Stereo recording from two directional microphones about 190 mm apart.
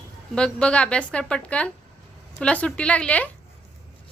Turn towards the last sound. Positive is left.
turn(degrees=5)  # may be behind; listen again after turning